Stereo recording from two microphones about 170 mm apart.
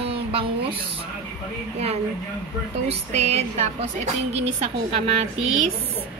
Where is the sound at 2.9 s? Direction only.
40° right (ahead or behind).